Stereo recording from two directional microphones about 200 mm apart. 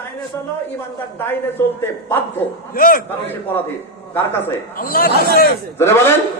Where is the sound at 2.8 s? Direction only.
45° left (ahead or behind).